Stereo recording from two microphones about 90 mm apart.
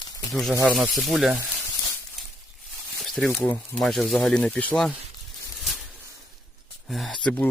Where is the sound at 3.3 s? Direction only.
20° left (ahead or behind).